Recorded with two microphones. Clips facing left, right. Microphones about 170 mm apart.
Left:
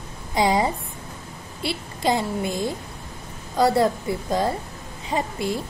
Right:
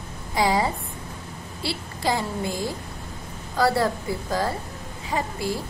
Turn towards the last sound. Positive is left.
turn(degrees=20)  # may be behind; listen again after turning